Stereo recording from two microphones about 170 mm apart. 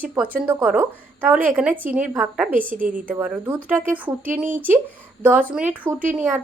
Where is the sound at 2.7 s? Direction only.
50° right (ahead or behind).